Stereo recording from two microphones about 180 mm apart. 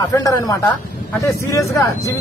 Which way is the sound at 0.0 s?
20° left (ahead or behind).